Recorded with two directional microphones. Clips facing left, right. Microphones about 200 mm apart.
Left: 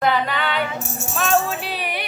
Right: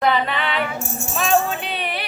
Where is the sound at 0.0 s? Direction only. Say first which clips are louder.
Even; centre (ahead or behind).